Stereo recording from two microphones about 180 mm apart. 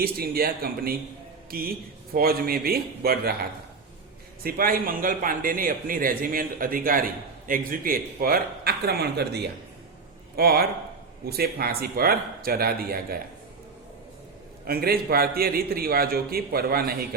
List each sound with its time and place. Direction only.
0.0 s a man's voice: 55° right (ahead or behind)
4.4 s a man's voice: 55° right (ahead or behind)
14.7 s a man's voice: 55° right (ahead or behind)